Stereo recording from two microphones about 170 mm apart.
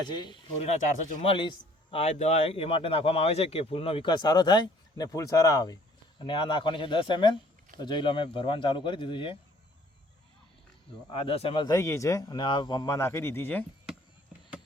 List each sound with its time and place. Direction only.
0.0 s a man's voice: 25° left (ahead or behind)
0.6 s a man's voice: 40° left (ahead or behind)
11.1 s a man's voice: 30° left (ahead or behind); by 13.7 s 10° left (ahead or behind)